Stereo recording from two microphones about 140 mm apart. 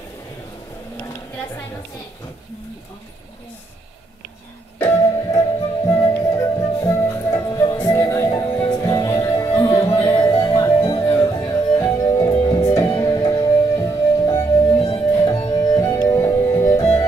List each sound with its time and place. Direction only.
4.7 s music: 15° left (ahead or behind)